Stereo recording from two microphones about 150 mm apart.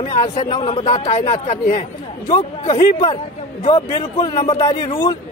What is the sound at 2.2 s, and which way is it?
A man's voice, 35° left (ahead or behind).